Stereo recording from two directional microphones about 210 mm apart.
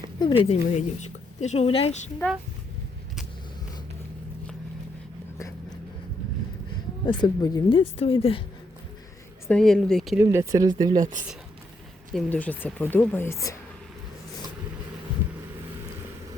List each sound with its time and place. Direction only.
0.4 s a woman's voice: 30° left (ahead or behind)
2.2 s a woman's voice: 10° left (ahead or behind)
7.0 s a woman's voice: 20° left (ahead or behind)
9.5 s speech: centre (ahead or behind)
10.2 s speech: 15° right (ahead or behind)
12.1 s a woman's voice: 5° left (ahead or behind)